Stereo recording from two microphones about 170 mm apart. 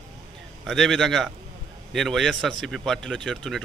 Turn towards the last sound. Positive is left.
turn(degrees=0)  # may be behind; listen again after turning